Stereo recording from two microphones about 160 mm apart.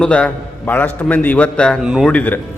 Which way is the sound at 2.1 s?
10° left (ahead or behind).